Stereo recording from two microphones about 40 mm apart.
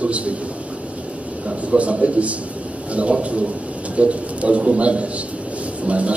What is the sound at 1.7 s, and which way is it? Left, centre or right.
A man's voice, right.